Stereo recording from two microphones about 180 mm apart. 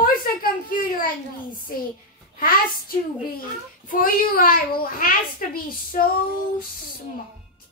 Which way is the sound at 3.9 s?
55° left (ahead or behind).